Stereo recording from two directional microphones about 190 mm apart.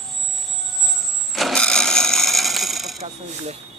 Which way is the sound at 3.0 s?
35° right (ahead or behind).